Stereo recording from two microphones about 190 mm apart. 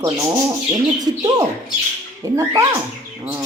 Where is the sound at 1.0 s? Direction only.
20° right (ahead or behind).